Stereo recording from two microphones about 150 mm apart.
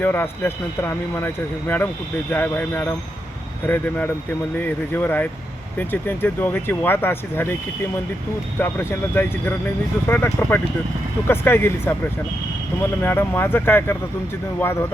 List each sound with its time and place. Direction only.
0.0 s speech: 15° left (ahead or behind)
8.5 s speech: 15° left (ahead or behind)